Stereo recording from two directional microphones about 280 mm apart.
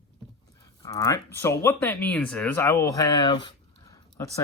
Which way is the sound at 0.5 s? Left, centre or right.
Centre.